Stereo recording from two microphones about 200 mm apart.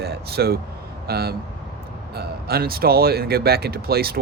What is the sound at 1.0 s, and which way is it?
Speech, 50° right (ahead or behind).